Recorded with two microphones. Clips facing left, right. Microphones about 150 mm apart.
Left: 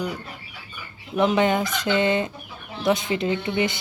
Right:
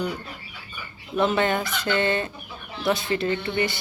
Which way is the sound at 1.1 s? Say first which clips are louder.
Left 2 dB; 15° left (ahead or behind).